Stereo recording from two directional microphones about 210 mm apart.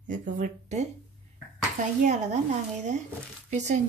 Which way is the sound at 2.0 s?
35° right (ahead or behind).